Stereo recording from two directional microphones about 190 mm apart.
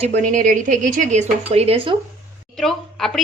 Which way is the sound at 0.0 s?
40° right (ahead or behind).